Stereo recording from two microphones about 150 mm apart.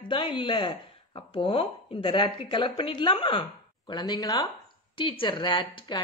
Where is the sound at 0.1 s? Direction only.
35° left (ahead or behind).